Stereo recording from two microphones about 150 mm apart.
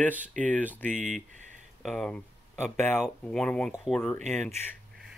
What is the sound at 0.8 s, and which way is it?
Speech, 60° right (ahead or behind).